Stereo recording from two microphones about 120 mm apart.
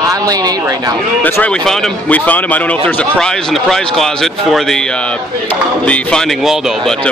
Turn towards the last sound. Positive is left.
turn(degrees=5)  # may be behind; listen again after turning